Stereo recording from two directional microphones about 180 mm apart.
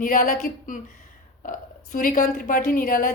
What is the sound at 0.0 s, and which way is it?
A woman's voice, 50° left (ahead or behind).